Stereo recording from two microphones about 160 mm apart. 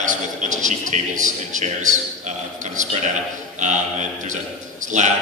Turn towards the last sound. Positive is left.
turn(degrees=-50)  # may be behind; listen again after turning